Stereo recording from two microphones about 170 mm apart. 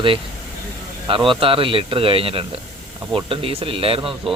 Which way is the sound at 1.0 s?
30° right (ahead or behind).